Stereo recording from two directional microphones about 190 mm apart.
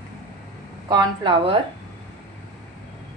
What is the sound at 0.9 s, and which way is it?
Speech, 25° right (ahead or behind).